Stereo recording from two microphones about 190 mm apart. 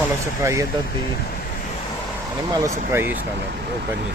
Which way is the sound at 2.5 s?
20° right (ahead or behind).